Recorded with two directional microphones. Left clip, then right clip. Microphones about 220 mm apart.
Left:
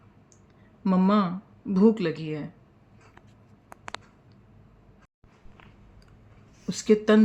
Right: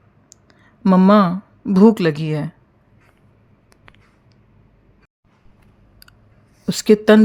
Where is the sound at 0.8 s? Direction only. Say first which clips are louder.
Right 11 dB; 50° right (ahead or behind).